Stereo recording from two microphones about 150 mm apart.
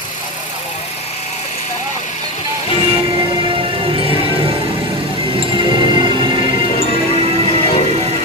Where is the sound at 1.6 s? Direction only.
55° left (ahead or behind).